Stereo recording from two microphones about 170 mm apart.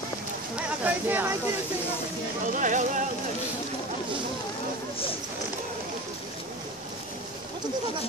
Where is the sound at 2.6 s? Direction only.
45° right (ahead or behind).